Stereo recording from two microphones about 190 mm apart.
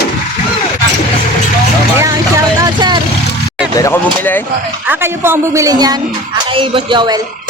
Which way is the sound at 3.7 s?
15° left (ahead or behind).